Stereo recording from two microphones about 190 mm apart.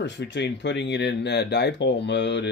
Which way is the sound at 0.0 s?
65° left (ahead or behind).